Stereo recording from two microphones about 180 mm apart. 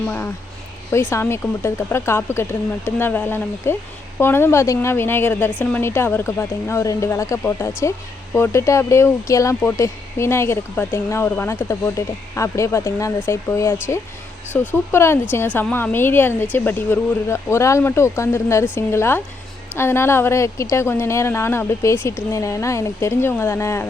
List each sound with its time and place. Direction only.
1.1 s speech: 15° left (ahead or behind)